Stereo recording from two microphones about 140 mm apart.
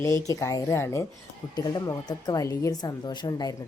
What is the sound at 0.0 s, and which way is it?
A woman's voice, 20° left (ahead or behind).